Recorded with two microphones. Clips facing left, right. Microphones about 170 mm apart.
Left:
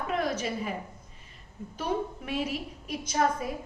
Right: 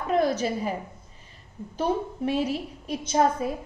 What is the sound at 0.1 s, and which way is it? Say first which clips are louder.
Speech: right 7 dB; 35° right (ahead or behind).